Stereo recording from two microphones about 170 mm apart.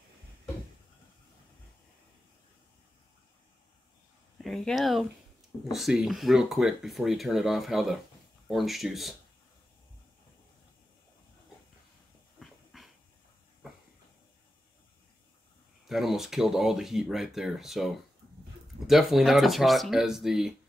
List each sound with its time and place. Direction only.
4.4 s speech: centre (ahead or behind)
12.4 s dog: centre (ahead or behind)
15.9 s speech: centre (ahead or behind)